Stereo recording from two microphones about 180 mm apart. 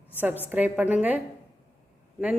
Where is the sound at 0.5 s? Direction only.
10° right (ahead or behind).